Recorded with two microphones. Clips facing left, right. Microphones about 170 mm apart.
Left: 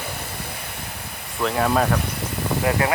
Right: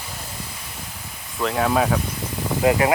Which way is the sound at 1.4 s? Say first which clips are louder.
Even; centre (ahead or behind).